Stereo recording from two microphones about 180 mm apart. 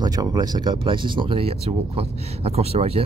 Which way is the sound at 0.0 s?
20° right (ahead or behind).